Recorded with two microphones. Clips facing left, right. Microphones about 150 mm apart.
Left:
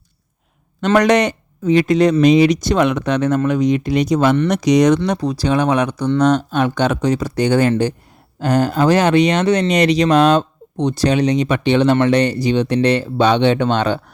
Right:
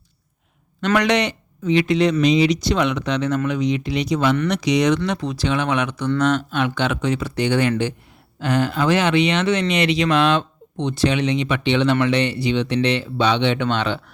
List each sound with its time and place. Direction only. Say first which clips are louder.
0.9 s speech: left 6 dB; 45° left (ahead or behind)